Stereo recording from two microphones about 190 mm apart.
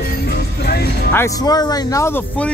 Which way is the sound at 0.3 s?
55° left (ahead or behind).